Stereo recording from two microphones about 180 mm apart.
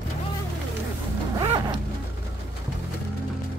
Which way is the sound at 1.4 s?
25° right (ahead or behind).